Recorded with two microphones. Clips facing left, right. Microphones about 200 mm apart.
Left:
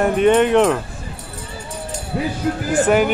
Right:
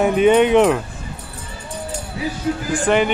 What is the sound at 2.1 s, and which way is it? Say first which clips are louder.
Speech: left 4 dB; 65° left (ahead or behind).